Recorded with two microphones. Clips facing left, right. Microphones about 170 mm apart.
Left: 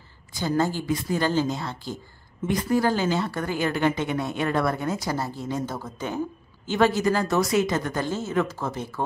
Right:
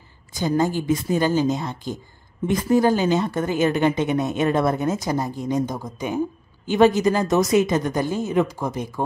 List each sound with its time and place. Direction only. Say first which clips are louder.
0.4 s a woman's voice: right 3 dB; 15° right (ahead or behind)